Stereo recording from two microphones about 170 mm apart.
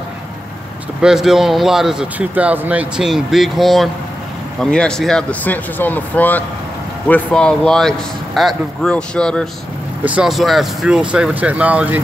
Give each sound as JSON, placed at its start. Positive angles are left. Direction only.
{"t": 1.0, "sound": "speech", "side_deg": -5}